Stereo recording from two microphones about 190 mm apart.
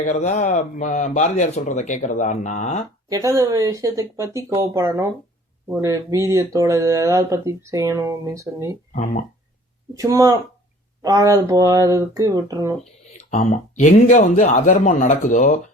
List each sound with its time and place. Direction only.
0.0 s speech: 40° left (ahead or behind)
3.1 s speech: 15° right (ahead or behind)
8.9 s speech: 35° left (ahead or behind)
9.9 s speech: 15° right (ahead or behind)
13.3 s speech: 40° left (ahead or behind)